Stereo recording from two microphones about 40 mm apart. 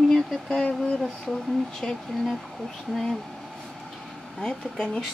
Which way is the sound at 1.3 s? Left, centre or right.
Centre.